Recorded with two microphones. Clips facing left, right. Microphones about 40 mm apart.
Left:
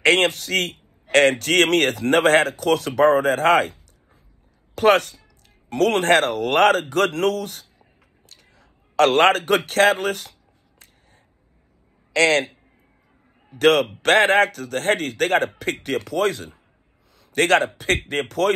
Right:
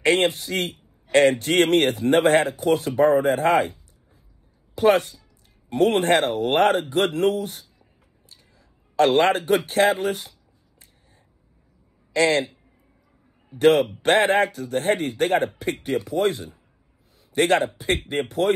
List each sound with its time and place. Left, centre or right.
0.0 s a man's voice: left
10.8 s a sound: left
12.1 s a man's voice: left
13.5 s a man's voice: left
17.2 s a sound: left
17.7 s a man's voice: left